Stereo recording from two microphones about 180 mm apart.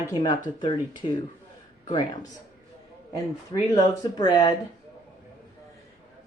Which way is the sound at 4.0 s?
20° left (ahead or behind).